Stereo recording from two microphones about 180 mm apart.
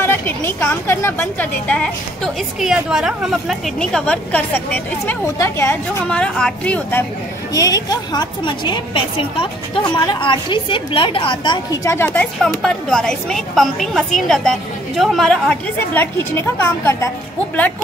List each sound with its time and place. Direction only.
0.0 s a woman's voice: 15° left (ahead or behind)
7.5 s a woman's voice: 20° left (ahead or behind)